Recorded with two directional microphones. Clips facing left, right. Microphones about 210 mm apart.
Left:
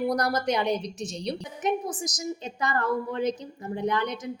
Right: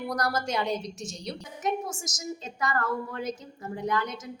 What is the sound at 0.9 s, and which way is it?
Speech, 60° left (ahead or behind).